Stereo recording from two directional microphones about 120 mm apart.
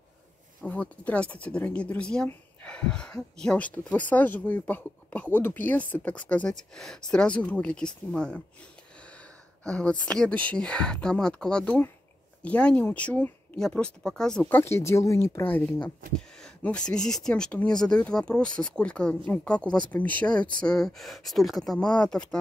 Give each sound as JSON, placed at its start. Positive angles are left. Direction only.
{"t": 0.6, "sound": "speech", "side_deg": 10}
{"t": 9.7, "sound": "speech", "side_deg": 10}
{"t": 14.6, "sound": "speech", "side_deg": 25}